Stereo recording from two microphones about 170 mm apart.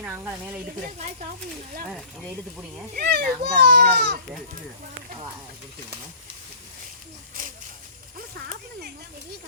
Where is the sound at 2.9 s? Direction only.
65° right (ahead or behind).